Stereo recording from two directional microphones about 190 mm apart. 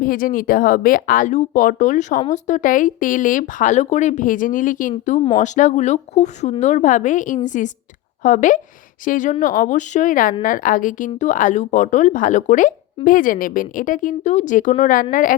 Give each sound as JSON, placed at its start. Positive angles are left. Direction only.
{"t": 0.0, "sound": "speech", "side_deg": 50}